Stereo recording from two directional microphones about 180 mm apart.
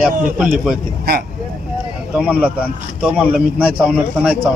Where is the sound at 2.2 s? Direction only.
5° right (ahead or behind).